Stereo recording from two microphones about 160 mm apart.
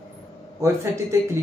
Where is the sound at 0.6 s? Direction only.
15° right (ahead or behind).